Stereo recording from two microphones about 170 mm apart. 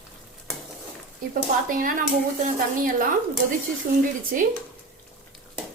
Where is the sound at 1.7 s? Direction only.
55° right (ahead or behind).